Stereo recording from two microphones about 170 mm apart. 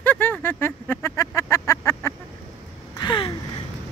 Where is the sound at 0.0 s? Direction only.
10° left (ahead or behind).